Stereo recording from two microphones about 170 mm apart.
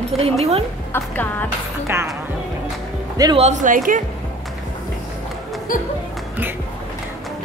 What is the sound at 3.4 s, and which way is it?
Speech, 45° right (ahead or behind).